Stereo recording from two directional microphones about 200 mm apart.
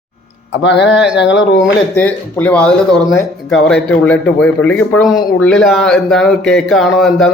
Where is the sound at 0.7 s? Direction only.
60° left (ahead or behind).